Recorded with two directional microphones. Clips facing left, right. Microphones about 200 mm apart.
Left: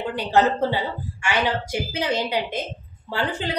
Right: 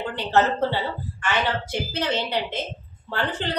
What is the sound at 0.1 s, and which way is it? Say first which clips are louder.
A woman's voice: left 2 dB; 10° left (ahead or behind).